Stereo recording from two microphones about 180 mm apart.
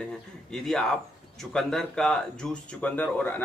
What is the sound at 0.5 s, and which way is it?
A man's voice, 5° left (ahead or behind).